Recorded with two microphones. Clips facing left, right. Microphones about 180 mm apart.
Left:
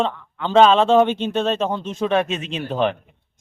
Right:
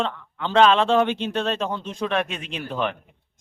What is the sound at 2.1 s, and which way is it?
Speech, 25° left (ahead or behind).